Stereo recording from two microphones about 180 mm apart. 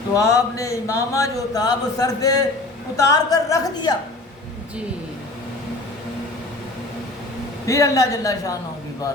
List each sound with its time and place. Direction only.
0.1 s a woman's voice: 20° left (ahead or behind)
7.7 s a woman's voice: 15° left (ahead or behind)